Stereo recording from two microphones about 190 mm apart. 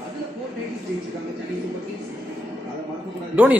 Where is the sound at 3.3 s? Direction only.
10° right (ahead or behind).